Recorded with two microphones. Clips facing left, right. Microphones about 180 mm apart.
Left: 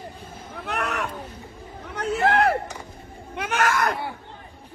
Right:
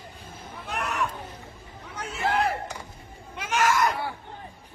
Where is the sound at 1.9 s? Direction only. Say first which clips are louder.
Left 6 dB; 65° left (ahead or behind).